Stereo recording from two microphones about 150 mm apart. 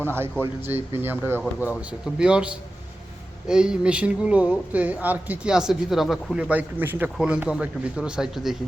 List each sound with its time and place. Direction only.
0.0 s speech: 15° right (ahead or behind)